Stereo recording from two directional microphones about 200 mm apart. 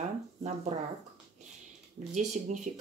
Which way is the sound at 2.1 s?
35° right (ahead or behind).